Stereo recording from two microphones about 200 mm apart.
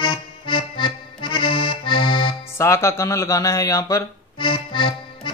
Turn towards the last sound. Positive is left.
turn(degrees=25)  # may be behind; listen again after turning